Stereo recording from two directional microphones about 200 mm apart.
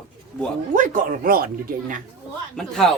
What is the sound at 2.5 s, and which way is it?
Speech, centre (ahead or behind).